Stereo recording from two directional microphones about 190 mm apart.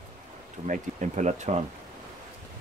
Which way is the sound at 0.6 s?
40° right (ahead or behind).